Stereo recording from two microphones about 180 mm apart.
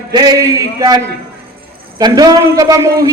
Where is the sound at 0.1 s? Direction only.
20° right (ahead or behind).